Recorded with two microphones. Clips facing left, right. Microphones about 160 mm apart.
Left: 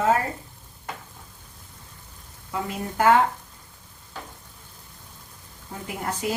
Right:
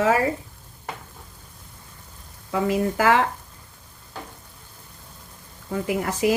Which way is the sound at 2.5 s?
90° right.